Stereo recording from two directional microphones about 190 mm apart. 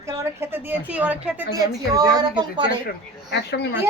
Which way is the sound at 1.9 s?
20° right (ahead or behind).